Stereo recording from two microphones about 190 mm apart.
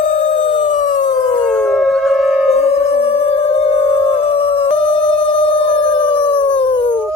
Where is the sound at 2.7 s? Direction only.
30° left (ahead or behind).